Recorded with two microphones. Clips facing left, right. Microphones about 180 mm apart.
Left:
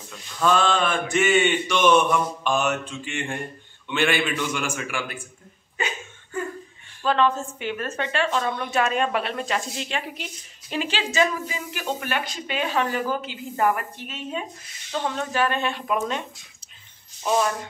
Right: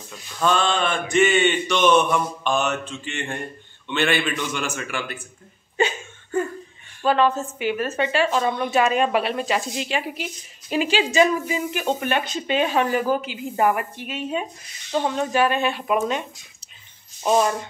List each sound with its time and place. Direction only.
0.5 s a sound: 5° left (ahead or behind)
7.1 s speech: 5° right (ahead or behind)
17.2 s speech: 20° right (ahead or behind)